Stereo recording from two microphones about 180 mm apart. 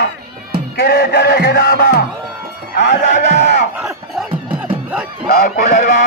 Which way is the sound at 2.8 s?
70° left (ahead or behind).